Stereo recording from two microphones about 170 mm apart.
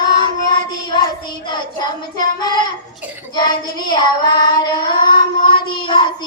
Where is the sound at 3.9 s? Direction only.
25° left (ahead or behind).